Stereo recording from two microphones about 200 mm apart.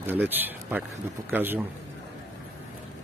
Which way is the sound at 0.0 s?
10° right (ahead or behind).